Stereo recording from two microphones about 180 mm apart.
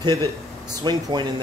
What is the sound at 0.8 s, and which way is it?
Speech, 20° right (ahead or behind).